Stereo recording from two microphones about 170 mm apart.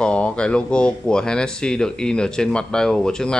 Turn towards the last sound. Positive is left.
turn(degrees=5)  # may be behind; listen again after turning